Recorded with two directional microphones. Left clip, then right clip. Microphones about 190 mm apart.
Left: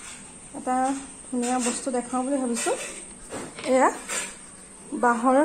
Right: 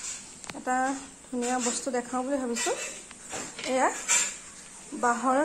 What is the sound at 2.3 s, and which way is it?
Speech, 20° right (ahead or behind).